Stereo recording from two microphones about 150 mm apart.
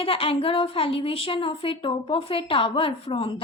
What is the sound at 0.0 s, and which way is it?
A woman's voice, 35° left (ahead or behind).